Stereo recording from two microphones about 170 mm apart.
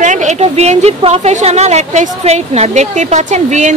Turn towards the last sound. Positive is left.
turn(degrees=-45)  # may be behind; listen again after turning